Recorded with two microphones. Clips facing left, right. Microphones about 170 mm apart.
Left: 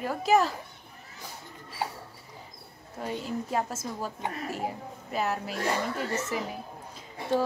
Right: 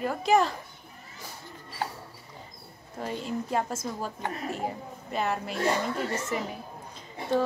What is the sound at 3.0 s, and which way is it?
A woman's voice, centre (ahead or behind).